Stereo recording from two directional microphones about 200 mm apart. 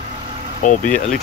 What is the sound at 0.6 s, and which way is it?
Speech, 40° left (ahead or behind).